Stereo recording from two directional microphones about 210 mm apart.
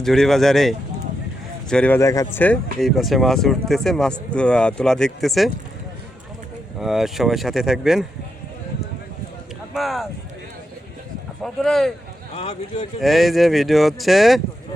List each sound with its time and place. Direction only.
0.0 s speech: centre (ahead or behind)
6.7 s speech: centre (ahead or behind)
9.7 s speech: centre (ahead or behind)
11.4 s speech: centre (ahead or behind)
12.3 s speech: 25° left (ahead or behind)
13.0 s speech: centre (ahead or behind)